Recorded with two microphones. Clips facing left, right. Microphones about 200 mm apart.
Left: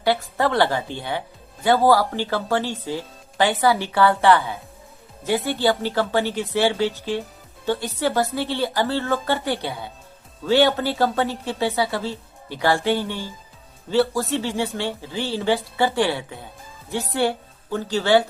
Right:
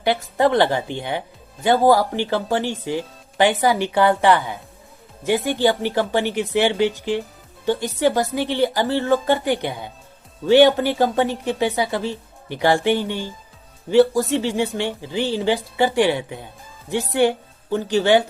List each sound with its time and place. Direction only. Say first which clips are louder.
0.0 s a woman's voice: right 3 dB; 20° right (ahead or behind)